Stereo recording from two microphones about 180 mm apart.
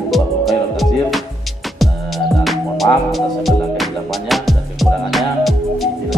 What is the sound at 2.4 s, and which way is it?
Music, centre (ahead or behind).